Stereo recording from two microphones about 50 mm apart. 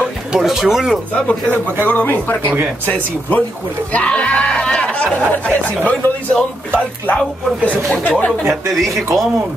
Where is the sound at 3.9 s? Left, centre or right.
Left.